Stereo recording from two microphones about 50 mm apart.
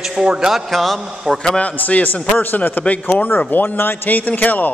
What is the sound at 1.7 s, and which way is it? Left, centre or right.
A man's voice, left.